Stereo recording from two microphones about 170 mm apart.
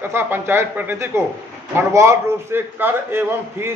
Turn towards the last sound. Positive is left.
turn(degrees=-15)  # may be behind; listen again after turning